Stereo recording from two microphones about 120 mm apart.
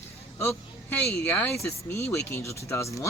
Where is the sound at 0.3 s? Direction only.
15° left (ahead or behind).